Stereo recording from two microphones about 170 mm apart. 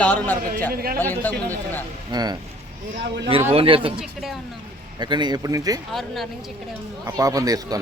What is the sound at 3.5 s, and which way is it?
Speech, 35° right (ahead or behind).